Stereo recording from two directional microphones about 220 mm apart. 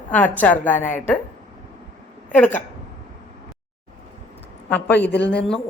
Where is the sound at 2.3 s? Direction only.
5° left (ahead or behind).